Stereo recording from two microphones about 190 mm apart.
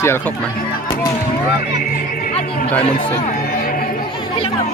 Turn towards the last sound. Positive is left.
turn(degrees=50)  # may be behind; listen again after turning